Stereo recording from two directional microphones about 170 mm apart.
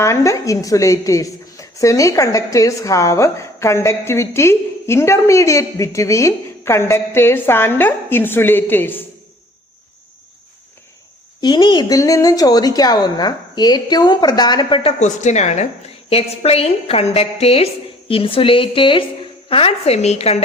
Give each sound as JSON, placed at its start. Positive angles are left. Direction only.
{"t": 0.0, "sound": "a woman's voice", "side_deg": 15}
{"t": 11.3, "sound": "a woman's voice", "side_deg": 25}